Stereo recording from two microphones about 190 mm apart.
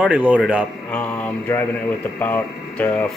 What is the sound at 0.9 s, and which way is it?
Mantra, 5° left (ahead or behind).